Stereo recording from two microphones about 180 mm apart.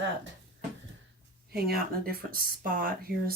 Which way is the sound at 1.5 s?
55° right (ahead or behind).